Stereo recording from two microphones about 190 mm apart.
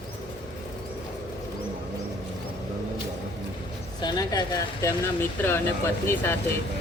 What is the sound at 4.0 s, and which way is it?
Speech, 20° left (ahead or behind).